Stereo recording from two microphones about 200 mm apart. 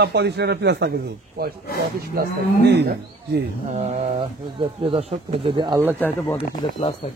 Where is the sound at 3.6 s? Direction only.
35° right (ahead or behind).